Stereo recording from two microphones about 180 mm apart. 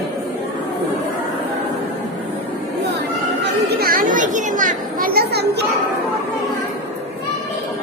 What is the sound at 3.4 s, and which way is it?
Chatter, 60° right (ahead or behind).